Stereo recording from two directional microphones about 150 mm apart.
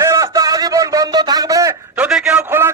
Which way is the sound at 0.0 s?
20° right (ahead or behind).